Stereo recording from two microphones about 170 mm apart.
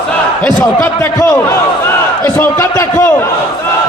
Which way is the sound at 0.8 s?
20° left (ahead or behind).